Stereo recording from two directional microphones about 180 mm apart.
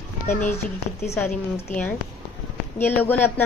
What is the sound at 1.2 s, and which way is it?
A woman's voice, 10° left (ahead or behind).